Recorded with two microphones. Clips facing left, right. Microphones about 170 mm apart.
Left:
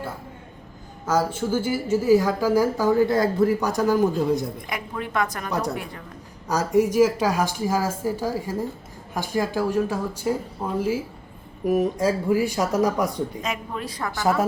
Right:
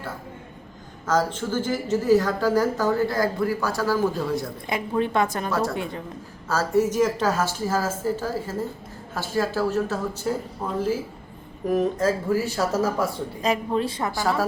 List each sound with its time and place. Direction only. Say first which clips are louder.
1.0 s a woman's voice: left 1 dB; 10° left (ahead or behind)
3.1 s a man's voice: left 4 dB; 25° left (ahead or behind)
4.6 s a woman's voice: right 6 dB; 30° right (ahead or behind)
5.5 s a woman's voice: right 1 dB; 15° left (ahead or behind)
5.7 s a woman's voice: right 3 dB; 25° right (ahead or behind)
6.5 s a woman's voice: left 1 dB; 15° left (ahead or behind)
13.4 s a woman's voice: right 6 dB; 30° right (ahead or behind)